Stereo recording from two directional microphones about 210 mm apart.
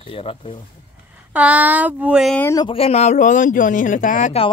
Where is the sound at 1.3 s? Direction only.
5° right (ahead or behind).